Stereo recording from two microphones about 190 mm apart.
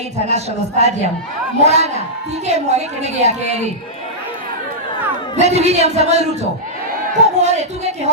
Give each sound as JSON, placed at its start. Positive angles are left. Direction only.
{"t": 0.3, "sound": "a woman's voice", "side_deg": -35}
{"t": 5.4, "sound": "a woman's voice", "side_deg": -35}